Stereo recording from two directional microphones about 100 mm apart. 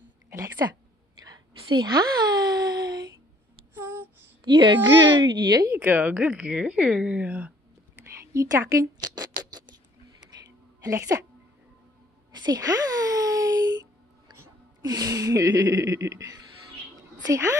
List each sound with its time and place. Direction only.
1.2 s a sound: 45° right (ahead or behind)
3.7 s a sound: 20° right (ahead or behind)
4.5 s speech: 50° right (ahead or behind)
5.7 s a woman's voice: 20° right (ahead or behind)
8.1 s a woman's voice: 30° right (ahead or behind)
9.0 s rodents: 40° right (ahead or behind)
10.8 s gasp: 35° right (ahead or behind)
12.4 s a sound: 35° right (ahead or behind)
14.8 s gasp: 40° right (ahead or behind)
17.2 s a woman's voice: 35° right (ahead or behind)